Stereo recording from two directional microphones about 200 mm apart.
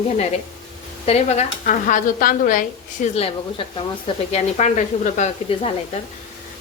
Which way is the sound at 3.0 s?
30° left (ahead or behind).